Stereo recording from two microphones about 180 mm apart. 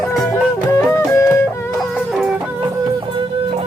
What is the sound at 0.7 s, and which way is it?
Music, 15° left (ahead or behind).